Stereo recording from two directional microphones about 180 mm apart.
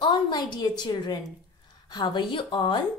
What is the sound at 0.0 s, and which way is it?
A woman's voice, 25° left (ahead or behind).